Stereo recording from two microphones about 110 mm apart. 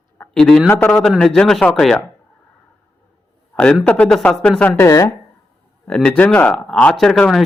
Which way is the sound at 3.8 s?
10° left (ahead or behind).